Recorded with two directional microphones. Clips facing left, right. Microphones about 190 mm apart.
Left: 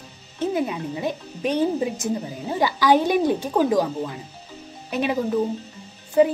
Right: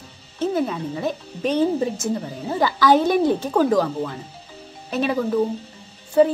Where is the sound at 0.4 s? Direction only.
15° left (ahead or behind).